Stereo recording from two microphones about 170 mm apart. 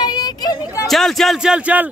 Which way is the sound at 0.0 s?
25° left (ahead or behind).